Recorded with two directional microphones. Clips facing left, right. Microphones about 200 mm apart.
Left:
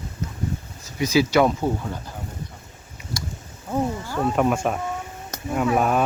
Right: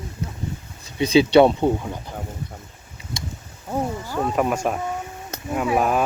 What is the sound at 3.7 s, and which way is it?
Wild animals, 10° right (ahead or behind).